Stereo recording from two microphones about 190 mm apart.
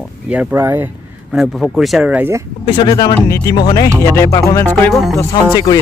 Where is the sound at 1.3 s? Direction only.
Centre (ahead or behind).